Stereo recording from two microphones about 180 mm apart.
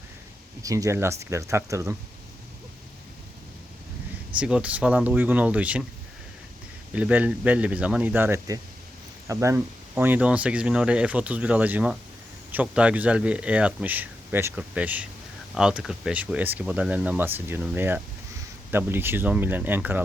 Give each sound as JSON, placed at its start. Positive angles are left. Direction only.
{"t": 0.6, "sound": "speech", "side_deg": -20}
{"t": 4.4, "sound": "speech", "side_deg": -5}
{"t": 6.9, "sound": "speech", "side_deg": -10}